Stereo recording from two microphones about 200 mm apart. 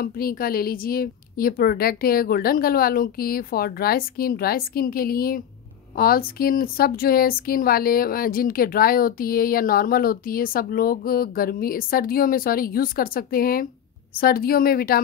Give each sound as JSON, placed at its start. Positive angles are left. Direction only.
{"t": 0.0, "sound": "speech", "side_deg": 45}